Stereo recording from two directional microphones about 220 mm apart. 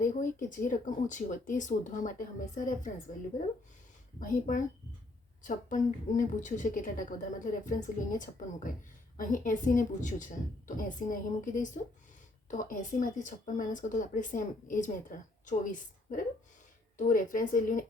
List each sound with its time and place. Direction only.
0.0 s speech: 35° left (ahead or behind)
4.2 s speech: 35° left (ahead or behind)